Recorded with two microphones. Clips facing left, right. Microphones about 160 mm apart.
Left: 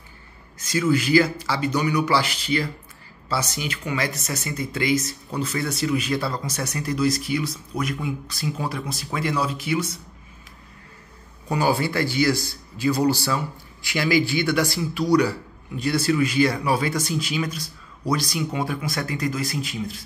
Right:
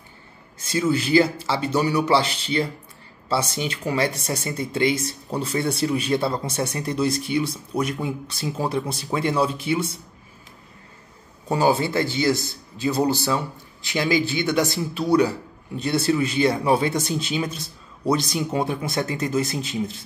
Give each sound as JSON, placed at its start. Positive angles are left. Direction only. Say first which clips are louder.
{"t": 0.6, "sound": "speech", "louder": "left 1 dB", "side_deg": -25}
{"t": 11.6, "sound": "speech", "louder": "right 2 dB", "side_deg": -20}